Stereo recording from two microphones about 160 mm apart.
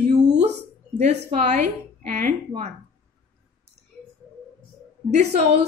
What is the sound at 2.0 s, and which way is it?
Speech, 50° right (ahead or behind).